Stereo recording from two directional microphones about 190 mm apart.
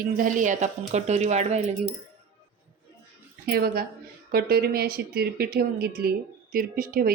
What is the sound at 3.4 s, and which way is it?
Speech, 55° right (ahead or behind).